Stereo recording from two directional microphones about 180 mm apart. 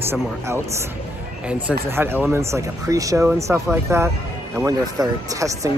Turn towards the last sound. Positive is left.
turn(degrees=-20)  # may be behind; listen again after turning